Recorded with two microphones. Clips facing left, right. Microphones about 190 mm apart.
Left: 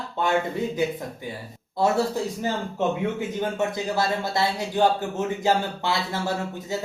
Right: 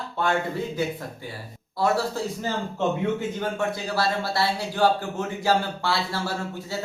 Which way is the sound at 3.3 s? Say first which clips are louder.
Left 2 dB; 20° left (ahead or behind).